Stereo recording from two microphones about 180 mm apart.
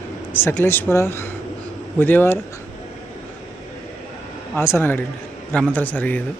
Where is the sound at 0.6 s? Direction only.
10° left (ahead or behind).